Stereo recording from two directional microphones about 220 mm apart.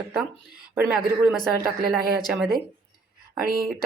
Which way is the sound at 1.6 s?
40° right (ahead or behind).